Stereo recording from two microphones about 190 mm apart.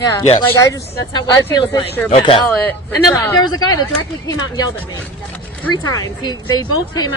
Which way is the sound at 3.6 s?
20° left (ahead or behind).